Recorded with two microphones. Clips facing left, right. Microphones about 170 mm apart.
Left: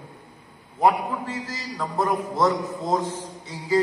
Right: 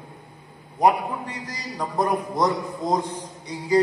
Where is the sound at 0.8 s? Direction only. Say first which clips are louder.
Right 1 dB; 15° right (ahead or behind).